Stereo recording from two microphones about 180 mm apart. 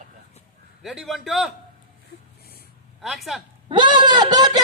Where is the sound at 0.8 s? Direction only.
Centre (ahead or behind).